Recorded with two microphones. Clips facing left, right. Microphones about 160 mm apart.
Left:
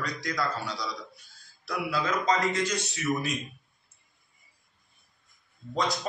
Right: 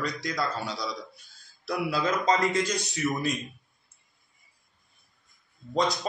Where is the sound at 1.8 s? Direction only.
30° right (ahead or behind).